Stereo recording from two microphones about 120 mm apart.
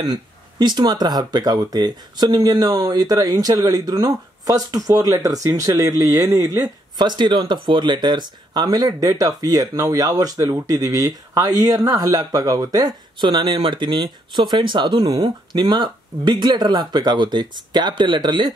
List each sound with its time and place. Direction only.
0.6 s speech: 35° right (ahead or behind)